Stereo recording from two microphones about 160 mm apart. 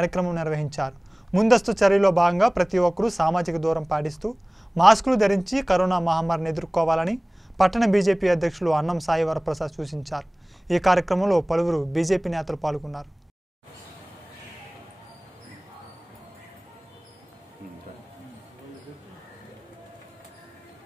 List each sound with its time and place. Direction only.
0.0 s a man's voice: centre (ahead or behind)